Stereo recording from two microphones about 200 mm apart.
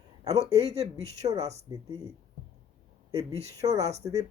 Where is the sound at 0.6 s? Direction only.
30° right (ahead or behind).